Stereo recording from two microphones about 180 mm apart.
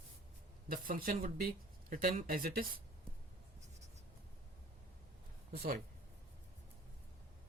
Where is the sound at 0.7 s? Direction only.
50° right (ahead or behind).